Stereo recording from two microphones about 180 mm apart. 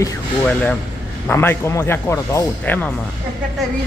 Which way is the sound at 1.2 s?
15° left (ahead or behind).